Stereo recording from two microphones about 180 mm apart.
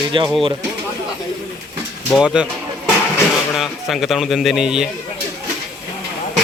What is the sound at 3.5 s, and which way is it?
Speech, centre (ahead or behind).